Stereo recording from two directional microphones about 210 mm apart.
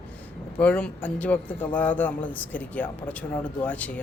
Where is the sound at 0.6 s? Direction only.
5° left (ahead or behind).